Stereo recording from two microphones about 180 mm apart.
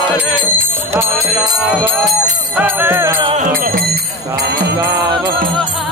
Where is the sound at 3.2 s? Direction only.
30° right (ahead or behind).